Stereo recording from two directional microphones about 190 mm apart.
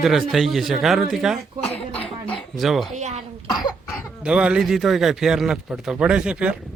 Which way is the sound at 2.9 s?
35° right (ahead or behind).